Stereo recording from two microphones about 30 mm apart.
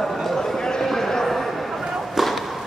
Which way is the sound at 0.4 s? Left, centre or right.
Centre.